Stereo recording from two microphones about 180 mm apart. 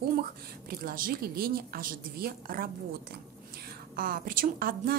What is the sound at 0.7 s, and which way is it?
A woman's voice, 55° right (ahead or behind).